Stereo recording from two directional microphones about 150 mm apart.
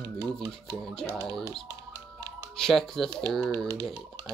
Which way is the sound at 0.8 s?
10° left (ahead or behind).